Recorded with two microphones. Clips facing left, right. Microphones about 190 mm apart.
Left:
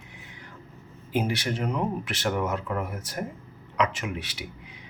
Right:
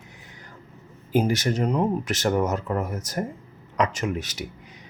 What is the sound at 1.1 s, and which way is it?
Speech, 45° right (ahead or behind).